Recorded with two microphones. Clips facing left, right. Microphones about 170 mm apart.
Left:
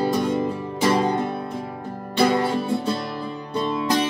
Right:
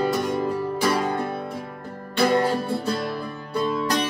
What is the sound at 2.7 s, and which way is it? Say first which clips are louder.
Music: left 1 dB; 20° left (ahead or behind).